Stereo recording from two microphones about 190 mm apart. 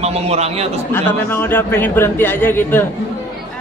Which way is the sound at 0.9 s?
10° left (ahead or behind).